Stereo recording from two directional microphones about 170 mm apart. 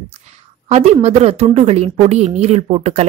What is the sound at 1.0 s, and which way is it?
Speech, 35° right (ahead or behind).